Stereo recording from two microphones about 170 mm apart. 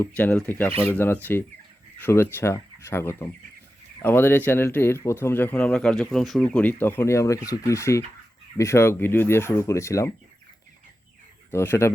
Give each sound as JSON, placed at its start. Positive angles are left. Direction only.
{"t": 0.0, "sound": "speech", "side_deg": 10}
{"t": 11.5, "sound": "speech", "side_deg": 15}